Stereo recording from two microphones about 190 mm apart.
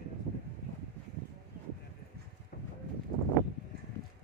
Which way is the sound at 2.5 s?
55° left (ahead or behind).